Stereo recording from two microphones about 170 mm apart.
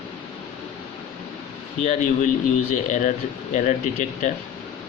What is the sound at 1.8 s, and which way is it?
A man's voice, 45° left (ahead or behind).